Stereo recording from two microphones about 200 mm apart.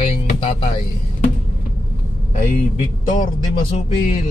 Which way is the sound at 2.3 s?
40° left (ahead or behind).